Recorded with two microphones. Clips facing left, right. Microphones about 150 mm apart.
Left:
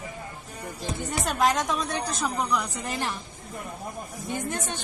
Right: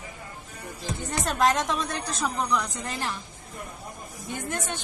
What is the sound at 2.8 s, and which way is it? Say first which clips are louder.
Speech: left 1 dB; 15° left (ahead or behind).